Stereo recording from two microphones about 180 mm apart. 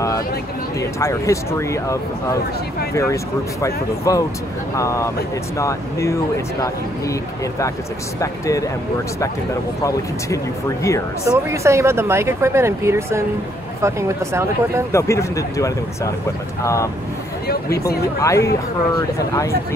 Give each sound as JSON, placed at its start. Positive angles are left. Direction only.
{"t": 0.7, "sound": "speech", "side_deg": 15}
{"t": 3.6, "sound": "speech", "side_deg": 15}
{"t": 9.8, "sound": "speech", "side_deg": 15}
{"t": 11.2, "sound": "speech", "side_deg": -15}
{"t": 14.9, "sound": "speech", "side_deg": 15}
{"t": 18.2, "sound": "speech", "side_deg": 15}